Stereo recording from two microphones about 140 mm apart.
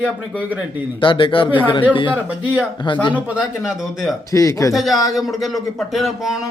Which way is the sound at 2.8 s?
35° left (ahead or behind).